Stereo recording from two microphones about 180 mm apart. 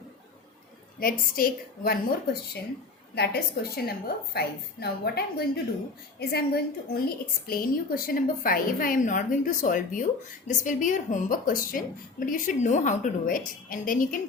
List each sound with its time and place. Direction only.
0.9 s a woman's voice: 55° left (ahead or behind)